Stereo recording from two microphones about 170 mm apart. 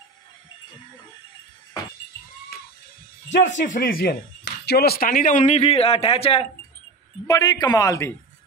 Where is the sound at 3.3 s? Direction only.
45° left (ahead or behind).